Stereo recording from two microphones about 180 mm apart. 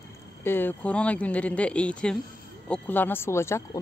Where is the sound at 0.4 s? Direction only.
10° left (ahead or behind).